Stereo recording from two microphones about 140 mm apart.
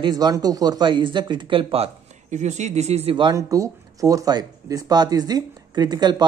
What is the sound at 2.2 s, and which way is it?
Speech, 55° right (ahead or behind).